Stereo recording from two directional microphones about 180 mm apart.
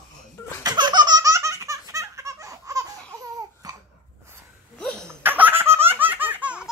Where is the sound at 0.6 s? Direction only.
25° right (ahead or behind).